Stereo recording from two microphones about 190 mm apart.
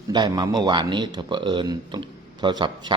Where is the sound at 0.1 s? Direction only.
20° right (ahead or behind).